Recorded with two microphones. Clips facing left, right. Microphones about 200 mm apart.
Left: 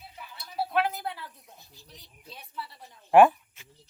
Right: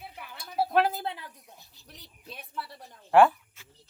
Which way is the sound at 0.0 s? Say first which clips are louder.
Right 3 dB; 60° right (ahead or behind).